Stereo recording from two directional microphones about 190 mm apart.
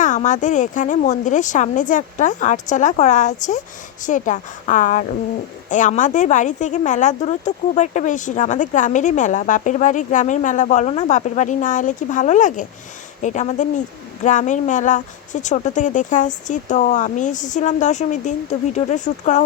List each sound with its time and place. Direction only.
0.0 s a woman's voice: 40° left (ahead or behind)